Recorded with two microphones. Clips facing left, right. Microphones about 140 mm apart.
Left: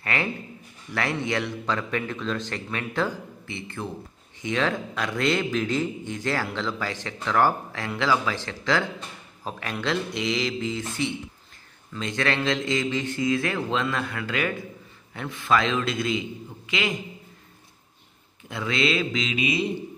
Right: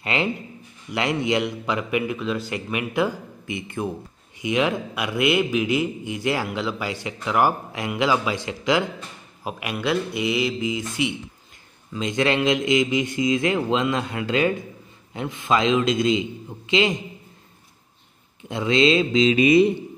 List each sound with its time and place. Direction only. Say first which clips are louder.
0.0 s a man's voice: right 4 dB; 20° right (ahead or behind)
18.5 s a man's voice: right 7 dB; 25° right (ahead or behind)
19.3 s speech: right 11 dB; 50° right (ahead or behind)